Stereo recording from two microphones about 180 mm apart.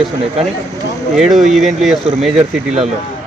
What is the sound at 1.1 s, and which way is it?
Speech, centre (ahead or behind).